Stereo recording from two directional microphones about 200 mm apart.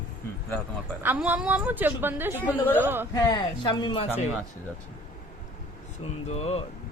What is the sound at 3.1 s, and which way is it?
Speech, 20° left (ahead or behind).